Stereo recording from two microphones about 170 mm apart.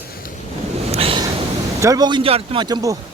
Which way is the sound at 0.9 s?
35° right (ahead or behind).